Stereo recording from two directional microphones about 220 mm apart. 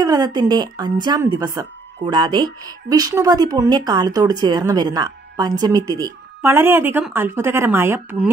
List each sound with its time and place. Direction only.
0.0 s a woman's voice: 20° right (ahead or behind)